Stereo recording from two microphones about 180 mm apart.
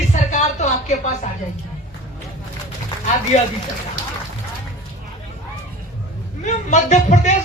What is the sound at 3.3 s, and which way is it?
Speech, 40° left (ahead or behind).